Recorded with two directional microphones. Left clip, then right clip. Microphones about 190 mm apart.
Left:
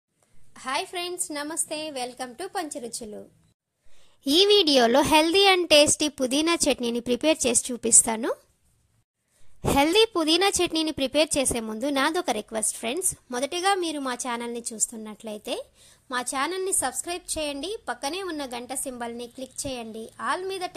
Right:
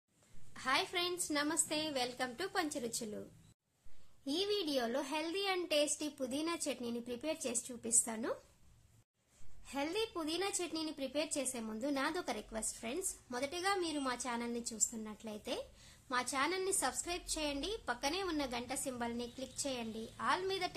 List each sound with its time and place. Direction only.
0.5 s a woman's voice: 30° left (ahead or behind)
4.3 s a woman's voice: 50° left (ahead or behind)
9.8 s a woman's voice: 50° left (ahead or behind); by 20.7 s 35° left (ahead or behind)